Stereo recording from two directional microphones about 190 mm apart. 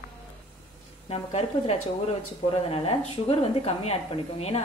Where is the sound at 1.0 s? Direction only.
35° left (ahead or behind).